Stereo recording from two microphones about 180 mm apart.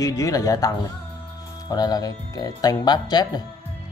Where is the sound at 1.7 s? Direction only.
20° left (ahead or behind).